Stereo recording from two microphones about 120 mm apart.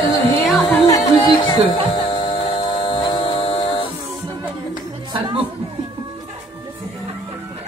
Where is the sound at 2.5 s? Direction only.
40° left (ahead or behind).